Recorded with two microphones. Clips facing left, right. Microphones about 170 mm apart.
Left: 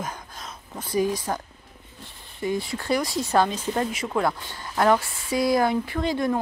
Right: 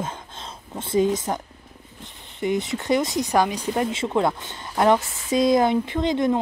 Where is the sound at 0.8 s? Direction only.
25° right (ahead or behind).